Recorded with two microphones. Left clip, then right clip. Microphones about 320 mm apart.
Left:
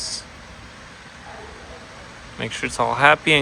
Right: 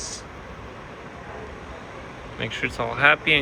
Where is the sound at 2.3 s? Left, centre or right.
Left.